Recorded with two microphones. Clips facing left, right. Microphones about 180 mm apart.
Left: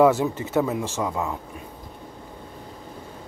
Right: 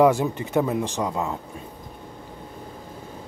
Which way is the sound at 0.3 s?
15° right (ahead or behind).